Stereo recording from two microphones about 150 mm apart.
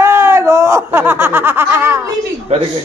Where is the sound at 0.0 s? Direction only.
15° right (ahead or behind).